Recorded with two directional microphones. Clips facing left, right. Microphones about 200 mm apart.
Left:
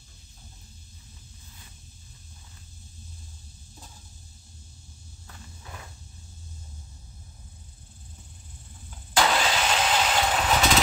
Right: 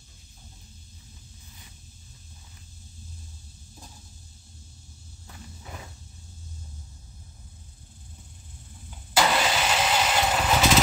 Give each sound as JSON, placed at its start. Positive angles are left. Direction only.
{"t": 9.1, "sound": "engine starting", "side_deg": -5}